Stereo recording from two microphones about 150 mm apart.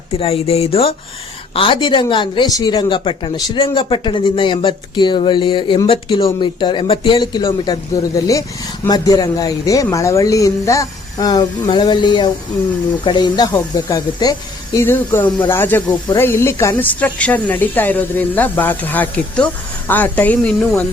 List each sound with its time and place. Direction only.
0.2 s speech: 45° left (ahead or behind); by 20.8 s 10° left (ahead or behind)